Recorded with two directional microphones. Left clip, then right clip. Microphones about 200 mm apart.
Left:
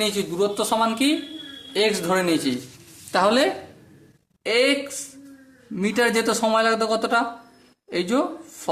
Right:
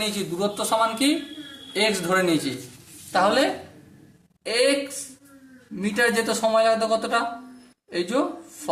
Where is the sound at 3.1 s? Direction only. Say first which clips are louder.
Left 1 dB; 40° left (ahead or behind).